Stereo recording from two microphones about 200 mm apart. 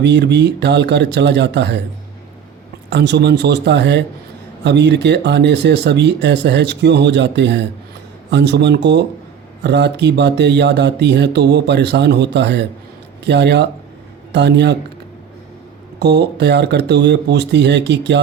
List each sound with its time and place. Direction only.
0.0 s speech: 60° right (ahead or behind)
2.9 s speech: 60° right (ahead or behind)
16.0 s speech: 55° right (ahead or behind)